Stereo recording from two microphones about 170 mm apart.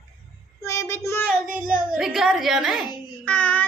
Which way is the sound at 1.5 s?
5° right (ahead or behind).